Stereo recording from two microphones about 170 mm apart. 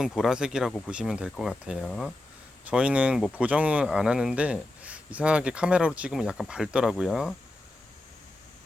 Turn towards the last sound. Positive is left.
turn(degrees=-5)  # may be behind; listen again after turning